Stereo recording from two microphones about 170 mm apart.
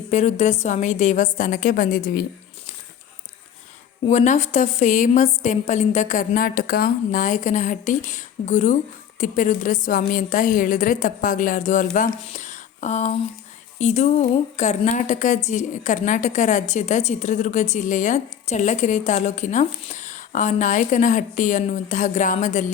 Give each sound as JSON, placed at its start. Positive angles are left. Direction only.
{"t": 0.1, "sound": "a woman's voice", "side_deg": 40}
{"t": 4.0, "sound": "a woman's voice", "side_deg": 45}